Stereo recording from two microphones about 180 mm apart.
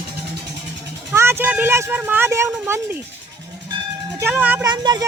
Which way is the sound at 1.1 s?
15° right (ahead or behind).